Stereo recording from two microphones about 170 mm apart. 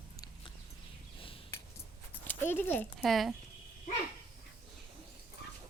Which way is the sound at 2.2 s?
10° left (ahead or behind).